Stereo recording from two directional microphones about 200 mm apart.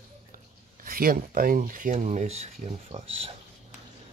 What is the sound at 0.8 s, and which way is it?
Speech, 45° right (ahead or behind).